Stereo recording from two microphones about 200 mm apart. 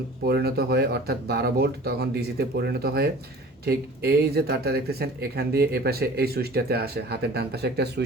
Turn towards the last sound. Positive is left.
turn(degrees=-55)  # may be behind; listen again after turning